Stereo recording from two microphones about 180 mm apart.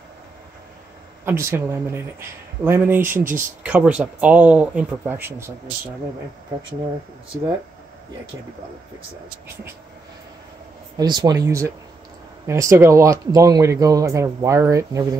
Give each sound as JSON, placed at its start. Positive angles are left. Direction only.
{"t": 1.2, "sound": "speech", "side_deg": -15}
{"t": 11.0, "sound": "speech", "side_deg": -20}